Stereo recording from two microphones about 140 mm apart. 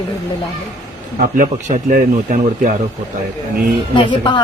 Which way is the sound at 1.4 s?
85° right.